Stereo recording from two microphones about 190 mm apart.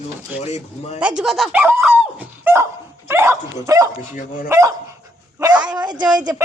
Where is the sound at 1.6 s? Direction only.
10° right (ahead or behind).